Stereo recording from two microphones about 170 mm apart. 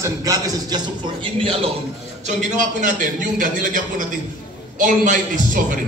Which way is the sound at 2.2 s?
45° right (ahead or behind).